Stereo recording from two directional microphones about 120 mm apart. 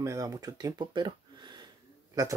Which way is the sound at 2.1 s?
30° right (ahead or behind).